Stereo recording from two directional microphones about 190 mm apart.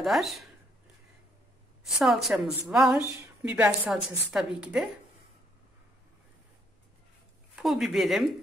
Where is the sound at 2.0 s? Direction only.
Centre (ahead or behind).